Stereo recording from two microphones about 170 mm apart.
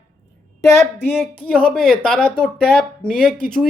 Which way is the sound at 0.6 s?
15° left (ahead or behind).